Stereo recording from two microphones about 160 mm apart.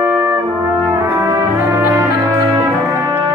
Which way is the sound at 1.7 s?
15° right (ahead or behind).